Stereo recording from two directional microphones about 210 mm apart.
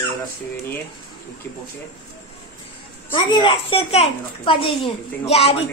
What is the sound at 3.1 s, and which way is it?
A child's voice, 20° left (ahead or behind).